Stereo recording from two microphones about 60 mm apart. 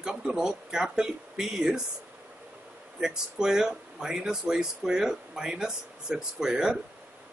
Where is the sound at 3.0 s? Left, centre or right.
Centre.